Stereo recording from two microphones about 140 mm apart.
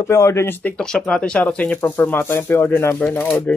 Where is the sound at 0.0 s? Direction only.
20° left (ahead or behind).